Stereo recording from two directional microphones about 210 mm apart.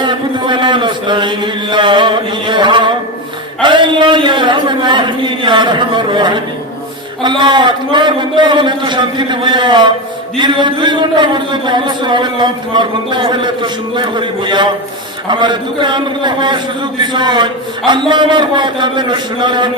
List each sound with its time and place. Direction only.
0.0 s chant: 20° right (ahead or behind)
3.6 s a sound: 20° right (ahead or behind)
7.2 s speech: 20° right (ahead or behind)